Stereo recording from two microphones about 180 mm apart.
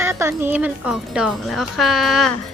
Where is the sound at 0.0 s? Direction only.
15° right (ahead or behind).